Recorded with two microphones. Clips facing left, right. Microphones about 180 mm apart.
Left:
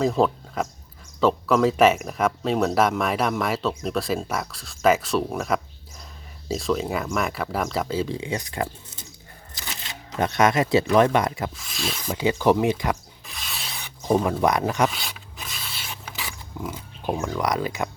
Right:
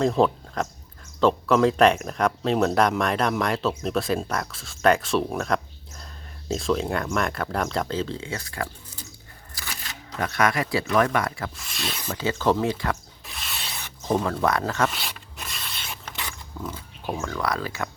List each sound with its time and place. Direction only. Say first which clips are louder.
0.0 s speech: even; centre (ahead or behind); by 9.0 s 20° left (ahead or behind)
9.6 s a sound: left 1 dB; 25° left (ahead or behind)
10.2 s speech: left 4 dB; 20° left (ahead or behind)
11.5 s speech: left 2 dB; centre (ahead or behind)
12.0 s speech: left 3 dB; 15° left (ahead or behind)
13.2 s rub: even; centre (ahead or behind)
14.0 s speech: left 3 dB; 10° left (ahead or behind)
14.8 s a sound: left 1 dB; centre (ahead or behind); by 17.8 s 20° left (ahead or behind)